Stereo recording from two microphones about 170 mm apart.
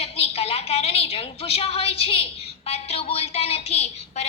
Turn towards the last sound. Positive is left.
turn(degrees=40)  # may be behind; listen again after turning